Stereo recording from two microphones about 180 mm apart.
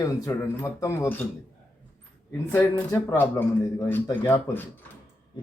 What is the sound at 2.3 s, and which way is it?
Speech, 15° left (ahead or behind).